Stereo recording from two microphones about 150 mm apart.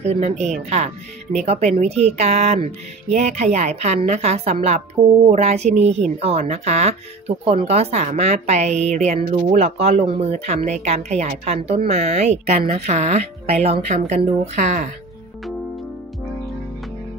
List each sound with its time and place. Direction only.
0.0 s speech: 45° right (ahead or behind)
5.0 s speech: 25° right (ahead or behind)
5.3 s speech: 45° right (ahead or behind)